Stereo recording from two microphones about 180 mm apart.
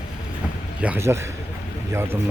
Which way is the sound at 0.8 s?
10° right (ahead or behind).